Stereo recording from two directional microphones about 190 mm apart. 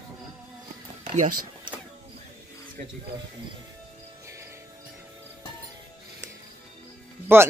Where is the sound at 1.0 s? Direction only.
40° right (ahead or behind).